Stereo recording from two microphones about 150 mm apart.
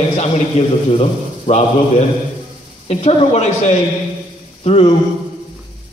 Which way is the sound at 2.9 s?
45° left (ahead or behind).